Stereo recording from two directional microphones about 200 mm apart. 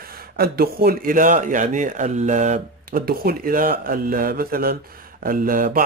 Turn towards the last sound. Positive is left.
turn(degrees=-45)  # may be behind; listen again after turning